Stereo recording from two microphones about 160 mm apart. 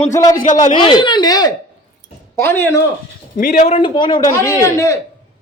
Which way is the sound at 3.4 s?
60° left (ahead or behind).